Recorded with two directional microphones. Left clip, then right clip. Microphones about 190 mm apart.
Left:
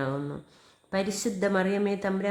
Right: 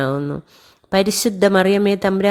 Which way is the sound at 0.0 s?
35° right (ahead or behind).